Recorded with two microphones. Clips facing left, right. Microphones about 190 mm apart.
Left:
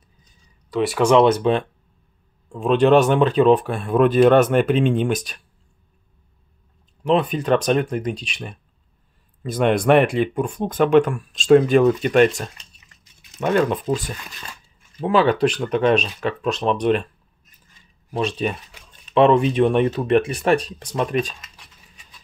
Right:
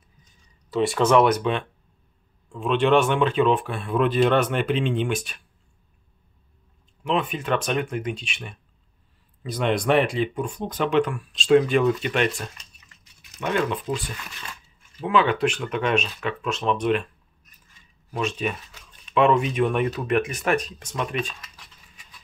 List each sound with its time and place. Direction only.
0.7 s speech: centre (ahead or behind)
1.0 s speech: 20° left (ahead or behind); by 5.4 s 40° left (ahead or behind)
7.0 s speech: 35° left (ahead or behind)
9.4 s speech: 50° left (ahead or behind)
13.4 s speech: 40° left (ahead or behind)
18.1 s speech: 35° left (ahead or behind)